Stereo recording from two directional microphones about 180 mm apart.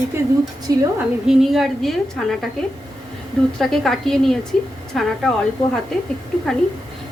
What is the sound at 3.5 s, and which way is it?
A woman's voice, centre (ahead or behind).